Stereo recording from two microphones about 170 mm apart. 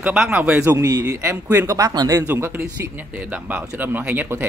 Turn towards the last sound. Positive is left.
turn(degrees=-10)  # may be behind; listen again after turning